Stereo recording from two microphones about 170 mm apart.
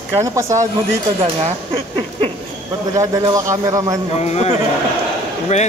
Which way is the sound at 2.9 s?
20° right (ahead or behind).